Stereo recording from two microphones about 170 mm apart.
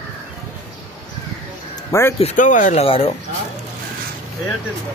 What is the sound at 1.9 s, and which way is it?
Speech, 15° left (ahead or behind).